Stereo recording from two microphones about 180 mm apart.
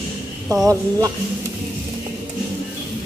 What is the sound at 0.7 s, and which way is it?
Speech, 20° right (ahead or behind).